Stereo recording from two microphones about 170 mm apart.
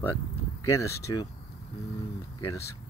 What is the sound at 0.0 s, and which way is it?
Speech, 15° left (ahead or behind).